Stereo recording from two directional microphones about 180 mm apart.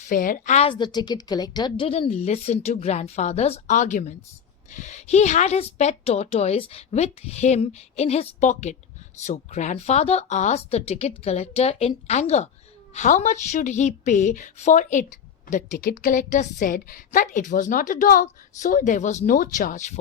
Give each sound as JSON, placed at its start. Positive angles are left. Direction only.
{"t": 0.0, "sound": "a woman's voice", "side_deg": 50}